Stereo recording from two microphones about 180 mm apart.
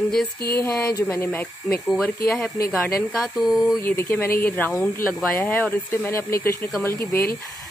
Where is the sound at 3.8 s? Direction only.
10° left (ahead or behind).